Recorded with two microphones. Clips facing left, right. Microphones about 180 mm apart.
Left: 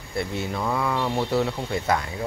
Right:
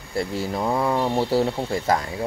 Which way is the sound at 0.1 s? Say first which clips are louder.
Right 3 dB; 35° right (ahead or behind).